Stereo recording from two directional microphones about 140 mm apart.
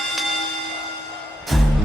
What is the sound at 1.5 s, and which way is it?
Music, centre (ahead or behind).